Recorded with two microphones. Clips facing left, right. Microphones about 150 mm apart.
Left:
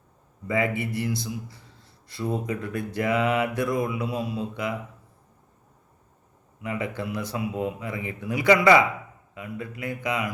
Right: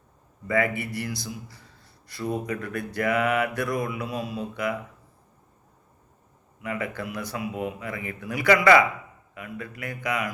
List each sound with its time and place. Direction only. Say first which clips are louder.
0.4 s mantra: even; 20° left (ahead or behind)
6.6 s mantra: left 1 dB; 20° left (ahead or behind)